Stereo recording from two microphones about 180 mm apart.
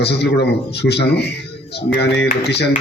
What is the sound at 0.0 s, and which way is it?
A man's voice, 70° left (ahead or behind).